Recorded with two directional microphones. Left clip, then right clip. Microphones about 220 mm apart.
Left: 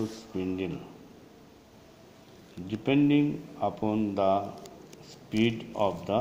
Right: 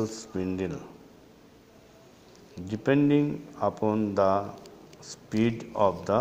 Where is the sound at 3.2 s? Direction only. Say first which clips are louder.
Right 1 dB; 25° right (ahead or behind).